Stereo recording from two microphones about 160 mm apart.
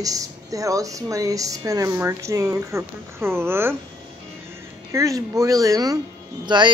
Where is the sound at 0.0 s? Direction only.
20° right (ahead or behind).